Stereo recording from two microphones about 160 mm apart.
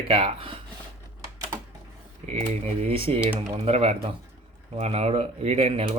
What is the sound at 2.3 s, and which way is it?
Speech, 40° right (ahead or behind).